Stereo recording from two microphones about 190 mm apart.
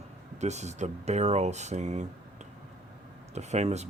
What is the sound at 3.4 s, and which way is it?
Speech, 35° right (ahead or behind).